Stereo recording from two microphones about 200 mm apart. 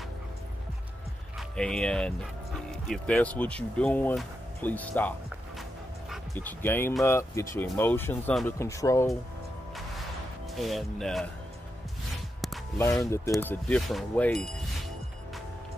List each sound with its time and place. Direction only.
1.6 s speech: 5° left (ahead or behind)
6.3 s speech: 10° left (ahead or behind)
10.6 s speech: centre (ahead or behind)
13.0 s speech: 15° left (ahead or behind)